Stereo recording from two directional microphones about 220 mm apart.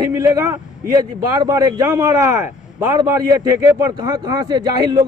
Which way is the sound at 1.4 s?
15° right (ahead or behind).